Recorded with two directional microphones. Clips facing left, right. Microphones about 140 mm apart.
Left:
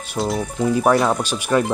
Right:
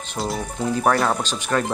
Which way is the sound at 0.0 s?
5° left (ahead or behind).